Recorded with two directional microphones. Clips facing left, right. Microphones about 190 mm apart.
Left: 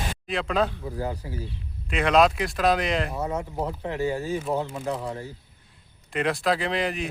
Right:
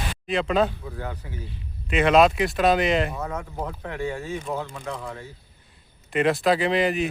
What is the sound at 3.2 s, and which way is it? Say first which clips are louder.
Speech: left 3 dB; 25° left (ahead or behind).